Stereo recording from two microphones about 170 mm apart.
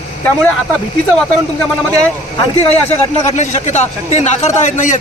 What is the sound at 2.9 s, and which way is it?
Speech, 40° left (ahead or behind).